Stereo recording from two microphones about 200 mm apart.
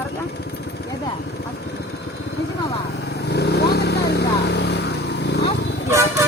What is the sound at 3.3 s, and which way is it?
Vehicle, 55° left (ahead or behind).